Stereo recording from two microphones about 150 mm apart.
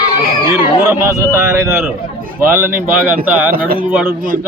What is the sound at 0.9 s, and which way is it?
Speech, 15° right (ahead or behind).